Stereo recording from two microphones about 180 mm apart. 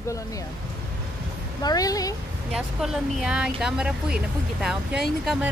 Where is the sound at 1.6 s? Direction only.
20° left (ahead or behind).